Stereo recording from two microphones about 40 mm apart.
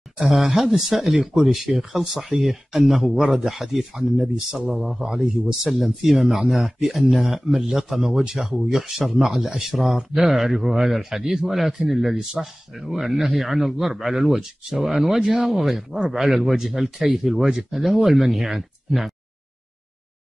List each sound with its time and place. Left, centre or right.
0.3 s speech: centre
5.0 s speech: centre
5.6 s speech: centre
15.4 s speech: centre
17.6 s speech: centre